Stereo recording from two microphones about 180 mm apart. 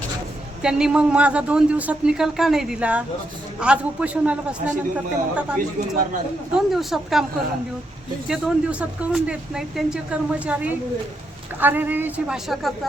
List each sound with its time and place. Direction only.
0.6 s a man's voice: 5° right (ahead or behind)
6.7 s speech: centre (ahead or behind)
8.3 s a man's voice: 5° right (ahead or behind)